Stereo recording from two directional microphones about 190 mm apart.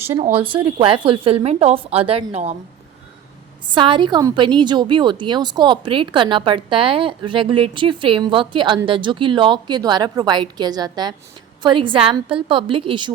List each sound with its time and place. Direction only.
0.3 s a woman's voice: 25° right (ahead or behind)
3.7 s a woman's voice: 25° right (ahead or behind)